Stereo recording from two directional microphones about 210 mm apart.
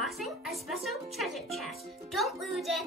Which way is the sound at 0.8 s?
Centre (ahead or behind).